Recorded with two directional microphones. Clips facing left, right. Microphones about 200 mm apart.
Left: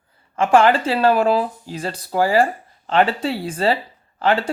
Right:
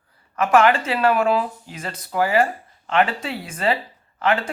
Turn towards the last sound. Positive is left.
turn(degrees=30)  # may be behind; listen again after turning